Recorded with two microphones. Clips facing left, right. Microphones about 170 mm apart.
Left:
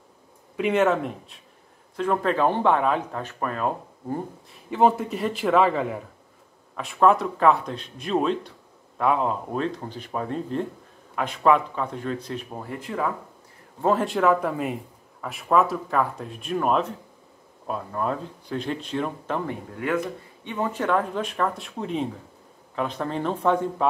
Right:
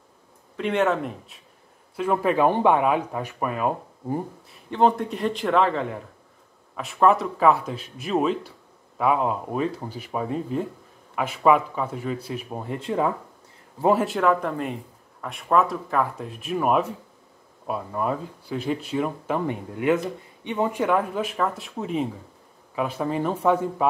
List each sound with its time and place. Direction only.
0.6 s speech: 5° left (ahead or behind)
4.6 s speech: 5° left (ahead or behind)
12.5 s speech: 25° right (ahead or behind)
13.7 s speech: 5° right (ahead or behind)